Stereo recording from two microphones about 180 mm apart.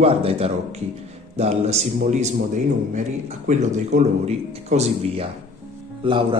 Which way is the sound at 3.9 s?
40° right (ahead or behind).